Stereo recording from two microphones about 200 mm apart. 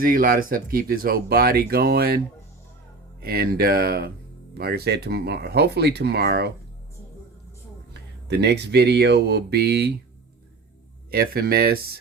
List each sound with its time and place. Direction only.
0.0 s speech: 45° right (ahead or behind)
8.3 s speech: 55° right (ahead or behind)
11.1 s speech: 50° right (ahead or behind)